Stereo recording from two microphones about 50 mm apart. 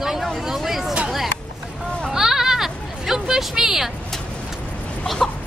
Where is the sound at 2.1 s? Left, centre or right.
Centre.